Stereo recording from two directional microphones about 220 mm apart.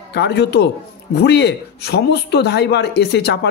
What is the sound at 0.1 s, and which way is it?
Speech, 50° left (ahead or behind).